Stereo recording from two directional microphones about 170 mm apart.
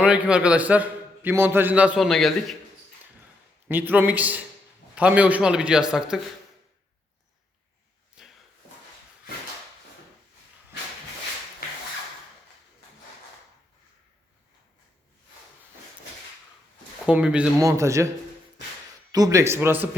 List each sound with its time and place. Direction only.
0.0 s a man's voice: 5° right (ahead or behind)
3.7 s a man's voice: 10° right (ahead or behind)
8.2 s a sound: 5° right (ahead or behind)
17.1 s a man's voice: 5° right (ahead or behind)
17.6 s a man's voice: 20° right (ahead or behind)
19.1 s a man's voice: 20° right (ahead or behind)